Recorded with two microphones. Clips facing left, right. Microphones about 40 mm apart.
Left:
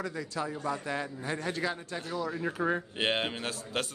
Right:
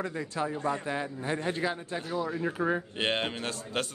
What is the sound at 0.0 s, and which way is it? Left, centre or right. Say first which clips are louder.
Speech: right 2 dB; right.